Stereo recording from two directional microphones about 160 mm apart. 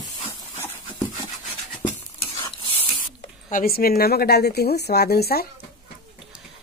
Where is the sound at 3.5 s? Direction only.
60° left (ahead or behind); by 5.4 s 75° left (ahead or behind).